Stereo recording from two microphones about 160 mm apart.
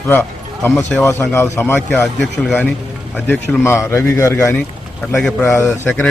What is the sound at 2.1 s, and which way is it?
Speech, centre (ahead or behind).